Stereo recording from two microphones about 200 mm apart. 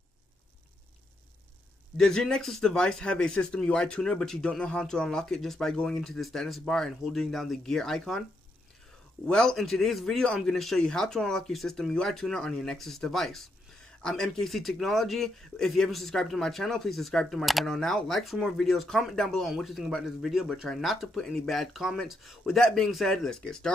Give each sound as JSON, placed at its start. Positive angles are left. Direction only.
{"t": 2.0, "sound": "a man's voice", "side_deg": 5}
{"t": 9.2, "sound": "a man's voice", "side_deg": 5}